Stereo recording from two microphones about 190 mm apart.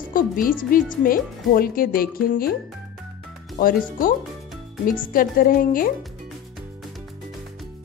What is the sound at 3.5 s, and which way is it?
Speech, 45° left (ahead or behind).